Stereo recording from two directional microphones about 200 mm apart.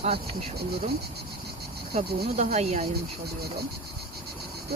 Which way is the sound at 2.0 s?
35° right (ahead or behind).